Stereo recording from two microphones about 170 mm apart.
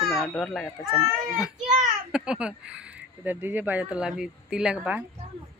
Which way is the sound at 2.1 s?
5° right (ahead or behind).